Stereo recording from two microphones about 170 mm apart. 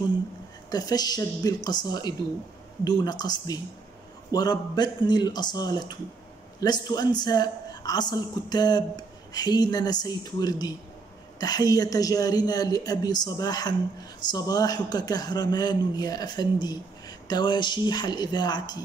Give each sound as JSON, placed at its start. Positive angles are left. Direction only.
{"t": 0.7, "sound": "a woman's voice", "side_deg": 25}